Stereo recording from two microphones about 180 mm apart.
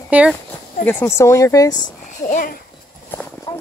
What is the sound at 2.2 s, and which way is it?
Speech, 45° left (ahead or behind).